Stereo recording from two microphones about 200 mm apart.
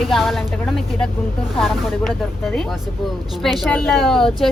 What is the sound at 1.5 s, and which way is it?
A woman's voice, centre (ahead or behind).